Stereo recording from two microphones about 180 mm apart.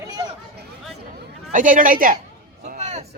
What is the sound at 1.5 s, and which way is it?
Speech, 45° right (ahead or behind).